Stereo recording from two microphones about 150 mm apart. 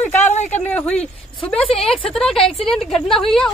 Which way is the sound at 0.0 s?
15° left (ahead or behind).